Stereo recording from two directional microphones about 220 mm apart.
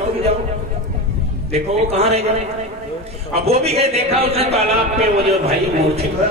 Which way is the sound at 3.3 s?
30° right (ahead or behind).